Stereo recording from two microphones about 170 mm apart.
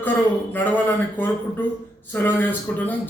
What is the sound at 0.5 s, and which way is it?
Speech, 10° left (ahead or behind).